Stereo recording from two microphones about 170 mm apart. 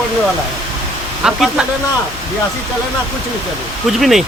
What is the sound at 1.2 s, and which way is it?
Speech, 5° right (ahead or behind).